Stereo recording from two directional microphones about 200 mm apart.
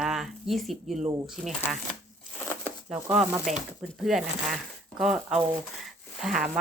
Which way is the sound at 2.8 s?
Centre (ahead or behind).